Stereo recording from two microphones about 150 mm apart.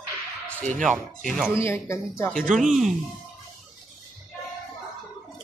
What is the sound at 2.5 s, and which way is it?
Speech, centre (ahead or behind).